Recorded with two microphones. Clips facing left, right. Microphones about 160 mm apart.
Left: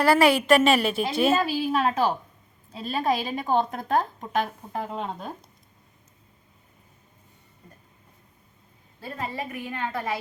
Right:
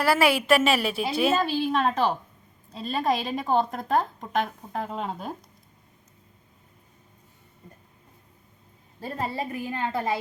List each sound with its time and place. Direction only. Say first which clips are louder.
0.0 s a woman's voice: left 3 dB; 5° right (ahead or behind)
9.0 s a woman's voice: right 2 dB; 40° right (ahead or behind)